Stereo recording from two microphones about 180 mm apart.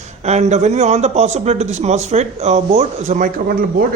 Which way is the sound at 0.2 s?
40° right (ahead or behind).